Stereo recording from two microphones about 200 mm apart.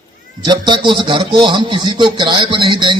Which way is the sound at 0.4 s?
20° right (ahead or behind).